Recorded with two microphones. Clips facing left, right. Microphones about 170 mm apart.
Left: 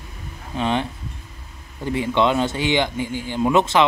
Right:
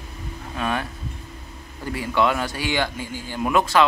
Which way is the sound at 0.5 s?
20° left (ahead or behind).